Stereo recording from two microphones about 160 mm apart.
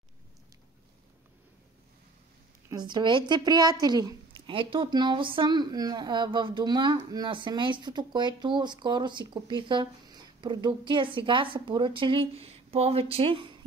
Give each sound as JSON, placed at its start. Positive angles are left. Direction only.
{"t": 2.7, "sound": "a woman's voice", "side_deg": -25}